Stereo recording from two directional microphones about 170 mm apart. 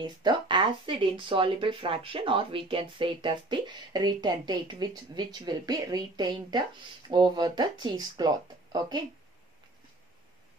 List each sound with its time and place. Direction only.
0.0 s speech: 25° right (ahead or behind)